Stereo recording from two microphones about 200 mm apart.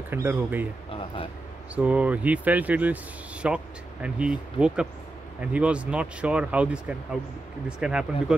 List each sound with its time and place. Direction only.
0.1 s speech: 10° right (ahead or behind)
0.8 s a sound: 25° left (ahead or behind)
1.8 s speech: 5° right (ahead or behind)